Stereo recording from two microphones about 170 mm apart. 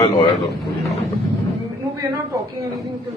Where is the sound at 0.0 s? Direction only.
25° left (ahead or behind).